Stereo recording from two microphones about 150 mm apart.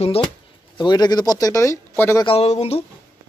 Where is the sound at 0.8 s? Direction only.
30° left (ahead or behind).